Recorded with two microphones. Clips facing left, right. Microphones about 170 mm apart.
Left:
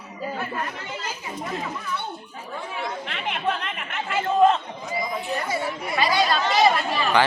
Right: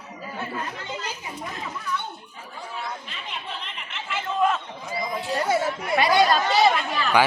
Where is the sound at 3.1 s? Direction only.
70° left (ahead or behind); by 4.2 s 50° left (ahead or behind).